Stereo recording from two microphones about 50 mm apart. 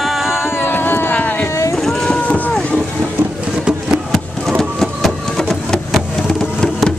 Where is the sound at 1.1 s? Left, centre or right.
Left.